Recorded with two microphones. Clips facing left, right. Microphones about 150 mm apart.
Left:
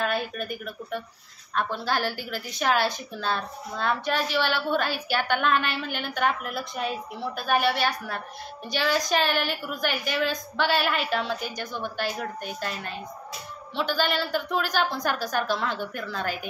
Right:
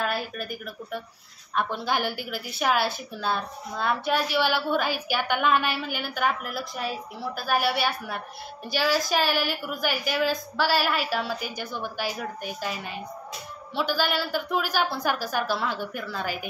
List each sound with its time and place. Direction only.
0.0 s a woman's voice: 5° right (ahead or behind)